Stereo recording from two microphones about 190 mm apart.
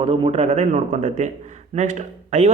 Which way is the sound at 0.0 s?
30° right (ahead or behind).